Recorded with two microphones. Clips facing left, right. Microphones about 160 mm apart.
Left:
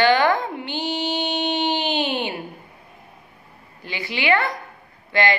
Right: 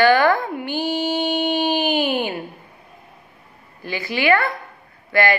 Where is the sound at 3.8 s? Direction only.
20° left (ahead or behind).